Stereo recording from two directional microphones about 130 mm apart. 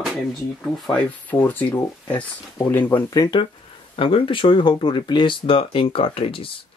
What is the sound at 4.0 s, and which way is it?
Speech, 40° left (ahead or behind).